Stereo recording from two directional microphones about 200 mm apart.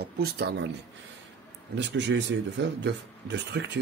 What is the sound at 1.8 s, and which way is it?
Speech, 60° right (ahead or behind).